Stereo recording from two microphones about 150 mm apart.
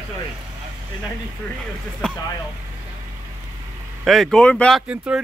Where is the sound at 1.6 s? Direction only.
Centre (ahead or behind).